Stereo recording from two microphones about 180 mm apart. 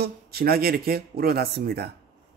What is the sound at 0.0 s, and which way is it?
Speech, 60° right (ahead or behind).